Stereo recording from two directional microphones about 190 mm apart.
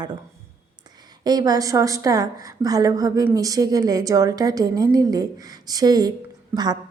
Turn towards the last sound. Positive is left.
turn(degrees=-20)  # may be behind; listen again after turning